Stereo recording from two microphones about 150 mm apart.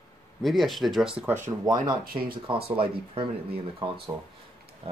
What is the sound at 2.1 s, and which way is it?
Speech, 80° right.